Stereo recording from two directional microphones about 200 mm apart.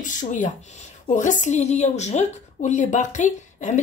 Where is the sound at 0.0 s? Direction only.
40° left (ahead or behind).